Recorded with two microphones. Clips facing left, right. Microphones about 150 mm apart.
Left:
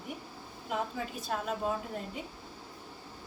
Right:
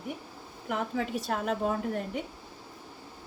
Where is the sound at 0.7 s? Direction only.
70° right (ahead or behind).